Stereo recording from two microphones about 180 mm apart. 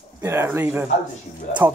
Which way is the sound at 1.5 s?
45° left (ahead or behind).